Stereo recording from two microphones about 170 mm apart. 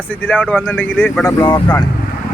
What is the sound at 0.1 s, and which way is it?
Speech, 10° left (ahead or behind).